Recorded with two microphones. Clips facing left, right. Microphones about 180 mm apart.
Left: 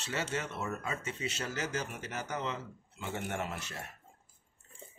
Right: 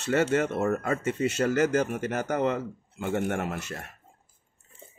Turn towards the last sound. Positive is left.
turn(degrees=-60)  # may be behind; listen again after turning